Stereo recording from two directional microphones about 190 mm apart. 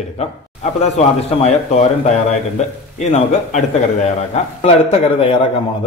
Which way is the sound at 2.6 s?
40° left (ahead or behind).